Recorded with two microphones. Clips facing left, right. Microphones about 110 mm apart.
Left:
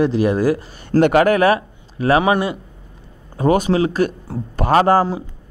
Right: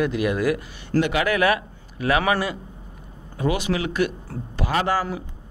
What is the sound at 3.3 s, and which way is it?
Speech, 40° left (ahead or behind).